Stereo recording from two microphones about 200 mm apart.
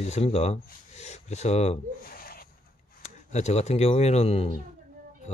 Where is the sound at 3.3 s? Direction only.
35° left (ahead or behind).